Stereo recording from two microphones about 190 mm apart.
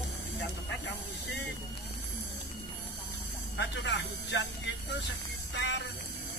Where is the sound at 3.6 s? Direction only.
70° left (ahead or behind).